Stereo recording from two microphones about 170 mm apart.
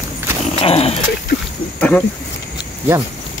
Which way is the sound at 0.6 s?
35° left (ahead or behind).